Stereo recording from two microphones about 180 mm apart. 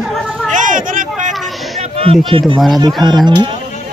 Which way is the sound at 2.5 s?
Centre (ahead or behind).